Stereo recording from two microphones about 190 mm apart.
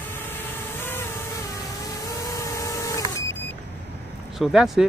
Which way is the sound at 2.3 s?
15° left (ahead or behind).